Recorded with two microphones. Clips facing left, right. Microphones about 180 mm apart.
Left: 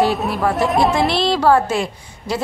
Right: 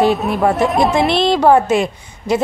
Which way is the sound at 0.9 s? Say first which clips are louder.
Right 3 dB; 20° right (ahead or behind).